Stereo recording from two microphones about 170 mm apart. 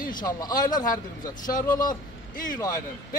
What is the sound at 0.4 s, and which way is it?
A man's voice, 25° left (ahead or behind).